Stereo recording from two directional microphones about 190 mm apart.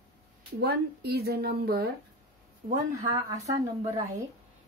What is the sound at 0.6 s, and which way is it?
Speech, 55° right (ahead or behind).